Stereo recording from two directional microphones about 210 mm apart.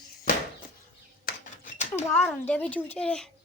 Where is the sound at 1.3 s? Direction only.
35° left (ahead or behind).